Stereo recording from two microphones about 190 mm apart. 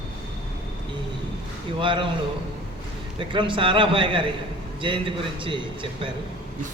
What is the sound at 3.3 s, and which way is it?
Speech, 25° right (ahead or behind).